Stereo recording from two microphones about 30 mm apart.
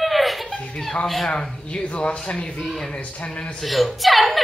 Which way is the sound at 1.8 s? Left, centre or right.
Left.